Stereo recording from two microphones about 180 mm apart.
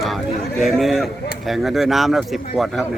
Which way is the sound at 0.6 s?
Centre (ahead or behind).